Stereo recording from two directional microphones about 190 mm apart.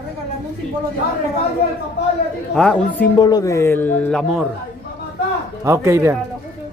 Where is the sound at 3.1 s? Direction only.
20° left (ahead or behind); by 4.4 s centre (ahead or behind).